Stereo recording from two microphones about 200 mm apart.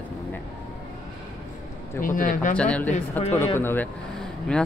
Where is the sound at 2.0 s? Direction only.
45° left (ahead or behind).